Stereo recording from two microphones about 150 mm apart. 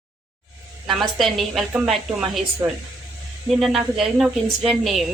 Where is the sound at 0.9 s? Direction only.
Centre (ahead or behind).